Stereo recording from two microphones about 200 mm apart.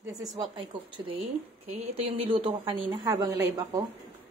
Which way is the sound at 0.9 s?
25° right (ahead or behind).